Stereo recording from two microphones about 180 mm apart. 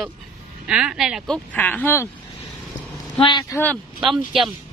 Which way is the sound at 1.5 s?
10° left (ahead or behind).